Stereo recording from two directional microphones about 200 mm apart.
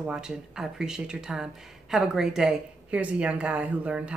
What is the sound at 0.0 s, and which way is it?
Speech, 5° right (ahead or behind).